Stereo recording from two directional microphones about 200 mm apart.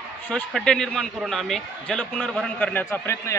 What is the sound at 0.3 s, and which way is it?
A man's voice, centre (ahead or behind).